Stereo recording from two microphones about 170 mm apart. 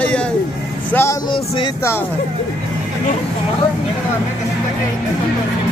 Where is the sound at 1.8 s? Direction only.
15° left (ahead or behind).